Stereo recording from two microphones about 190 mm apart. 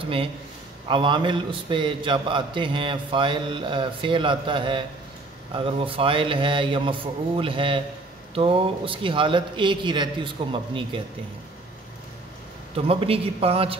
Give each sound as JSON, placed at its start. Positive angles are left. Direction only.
{"t": 0.0, "sound": "a man's voice", "side_deg": -30}
{"t": 12.7, "sound": "a man's voice", "side_deg": -30}